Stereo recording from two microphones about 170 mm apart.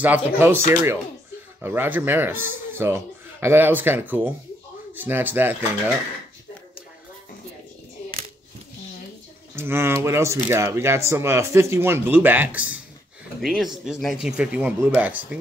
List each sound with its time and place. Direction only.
0.0 s speech: 10° right (ahead or behind)
1.6 s speech: 10° right (ahead or behind)
9.6 s speech: 15° right (ahead or behind)